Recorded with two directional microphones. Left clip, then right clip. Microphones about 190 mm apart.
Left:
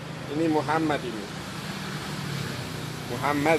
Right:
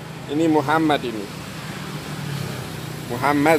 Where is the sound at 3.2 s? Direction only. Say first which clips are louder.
Right 6 dB; 35° right (ahead or behind).